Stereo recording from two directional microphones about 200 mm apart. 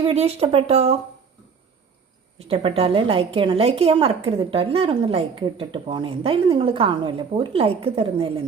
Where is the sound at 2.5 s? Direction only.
30° right (ahead or behind).